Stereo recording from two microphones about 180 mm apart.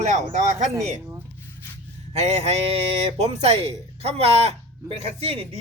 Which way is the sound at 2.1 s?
35° right (ahead or behind).